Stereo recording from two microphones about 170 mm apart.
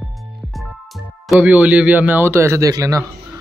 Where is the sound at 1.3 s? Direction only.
10° right (ahead or behind).